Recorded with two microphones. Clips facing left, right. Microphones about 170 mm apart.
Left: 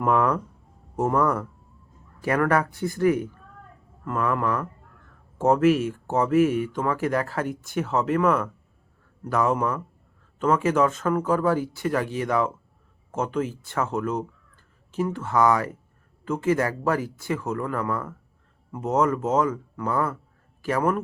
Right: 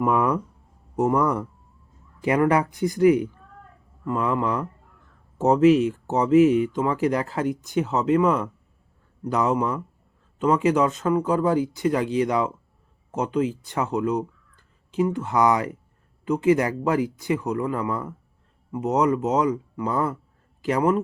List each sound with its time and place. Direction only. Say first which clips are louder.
0.0 s speech: even; 10° right (ahead or behind)